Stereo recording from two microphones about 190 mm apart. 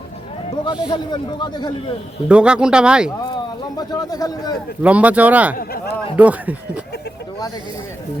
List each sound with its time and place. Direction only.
0.6 s a man's voice: 25° left (ahead or behind)
2.3 s speech: 5° right (ahead or behind)
3.8 s a man's voice: 20° left (ahead or behind)
4.8 s speech: 5° right (ahead or behind)
5.5 s speech: 55° left (ahead or behind)
6.1 s speech: 10° right (ahead or behind)